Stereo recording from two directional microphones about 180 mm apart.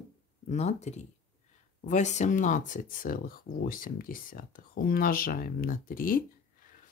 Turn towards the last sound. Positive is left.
turn(degrees=50)  # may be behind; listen again after turning